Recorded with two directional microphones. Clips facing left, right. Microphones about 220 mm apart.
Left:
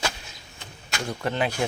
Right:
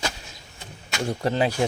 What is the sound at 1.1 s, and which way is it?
Speech, 35° right (ahead or behind).